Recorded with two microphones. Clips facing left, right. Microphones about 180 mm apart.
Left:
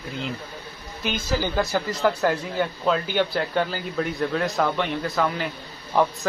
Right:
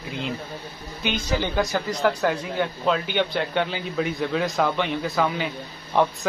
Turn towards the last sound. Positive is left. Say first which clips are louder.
# even
turn(degrees=0)  # may be behind; listen again after turning